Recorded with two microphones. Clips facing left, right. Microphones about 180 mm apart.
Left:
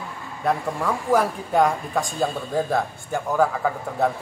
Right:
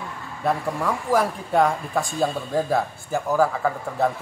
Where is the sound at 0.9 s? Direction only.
Centre (ahead or behind).